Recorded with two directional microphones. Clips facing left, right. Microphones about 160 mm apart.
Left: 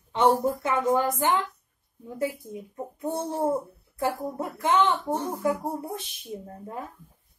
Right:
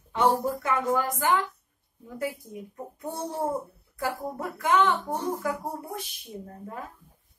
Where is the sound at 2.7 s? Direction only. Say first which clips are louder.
Left 6 dB; 25° left (ahead or behind).